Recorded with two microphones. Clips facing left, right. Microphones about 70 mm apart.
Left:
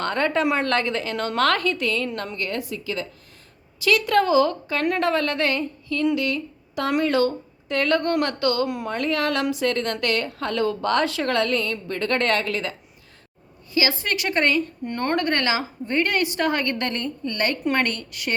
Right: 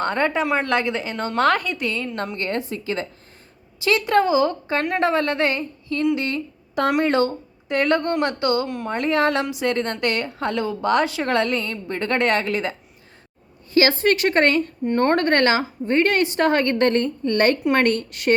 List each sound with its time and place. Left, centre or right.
0.0 s a woman's voice: right
2.1 s a woman's voice: right
8.6 s speech: centre
8.9 s a woman's voice: right
13.7 s a woman's voice: right
14.8 s a woman's voice: right